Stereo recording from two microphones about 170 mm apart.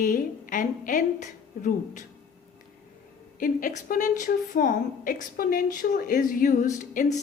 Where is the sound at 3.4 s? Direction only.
55° left (ahead or behind).